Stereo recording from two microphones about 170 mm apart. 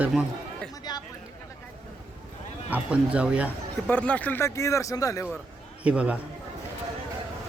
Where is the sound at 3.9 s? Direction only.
10° left (ahead or behind).